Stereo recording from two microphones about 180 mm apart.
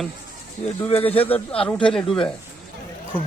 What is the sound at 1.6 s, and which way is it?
Speech, 5° left (ahead or behind).